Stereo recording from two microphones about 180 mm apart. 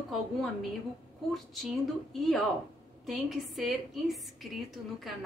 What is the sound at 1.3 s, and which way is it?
A woman's voice, centre (ahead or behind).